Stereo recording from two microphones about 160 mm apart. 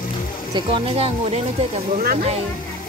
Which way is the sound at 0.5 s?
35° right (ahead or behind).